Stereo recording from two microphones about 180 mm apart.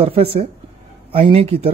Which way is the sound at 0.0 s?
35° right (ahead or behind).